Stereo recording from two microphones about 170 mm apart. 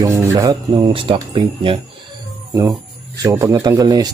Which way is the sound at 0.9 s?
30° right (ahead or behind).